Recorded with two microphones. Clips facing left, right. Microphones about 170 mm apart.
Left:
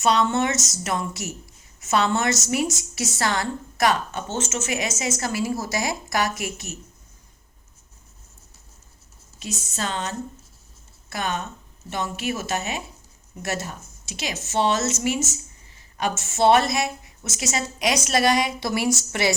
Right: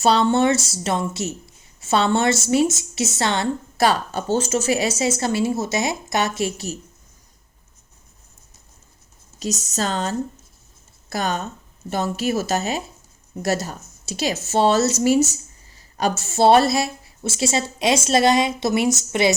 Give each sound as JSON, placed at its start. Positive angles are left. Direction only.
{"t": 0.0, "sound": "a woman's voice", "side_deg": -30}
{"t": 9.4, "sound": "speech", "side_deg": -40}